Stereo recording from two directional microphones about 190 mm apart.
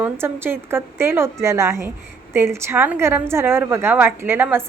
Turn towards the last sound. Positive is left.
turn(degrees=-10)  # may be behind; listen again after turning